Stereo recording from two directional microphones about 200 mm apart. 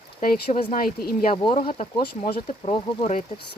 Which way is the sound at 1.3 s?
25° left (ahead or behind).